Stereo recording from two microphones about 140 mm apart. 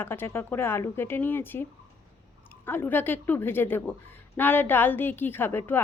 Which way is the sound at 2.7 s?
15° left (ahead or behind).